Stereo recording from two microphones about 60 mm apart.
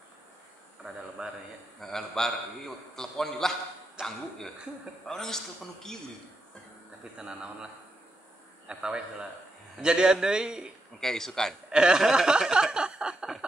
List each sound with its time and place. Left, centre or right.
1.2 s a man's voice: centre
1.8 s a man's voice: centre
4.0 s a man's voice: centre
5.0 s a man's voice: centre
8.6 s a man's voice: centre
11.0 s a man's voice: centre
11.7 s a sound: centre